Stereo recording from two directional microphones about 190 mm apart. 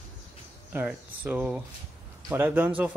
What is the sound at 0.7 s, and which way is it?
Speech, 10° right (ahead or behind).